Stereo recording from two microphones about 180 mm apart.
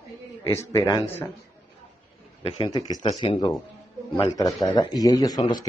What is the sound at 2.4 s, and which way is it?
Speech, 30° left (ahead or behind).